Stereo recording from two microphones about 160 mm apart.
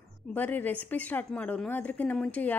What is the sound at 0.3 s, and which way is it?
A woman's voice, 10° left (ahead or behind).